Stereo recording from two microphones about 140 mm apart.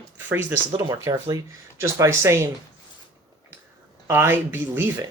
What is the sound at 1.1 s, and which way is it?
Speech, 30° right (ahead or behind).